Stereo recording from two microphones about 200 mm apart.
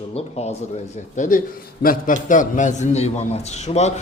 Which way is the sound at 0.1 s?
30° left (ahead or behind).